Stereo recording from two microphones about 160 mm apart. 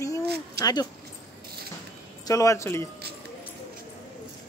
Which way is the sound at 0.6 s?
25° left (ahead or behind).